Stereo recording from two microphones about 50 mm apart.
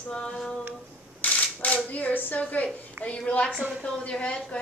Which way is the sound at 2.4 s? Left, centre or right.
Left.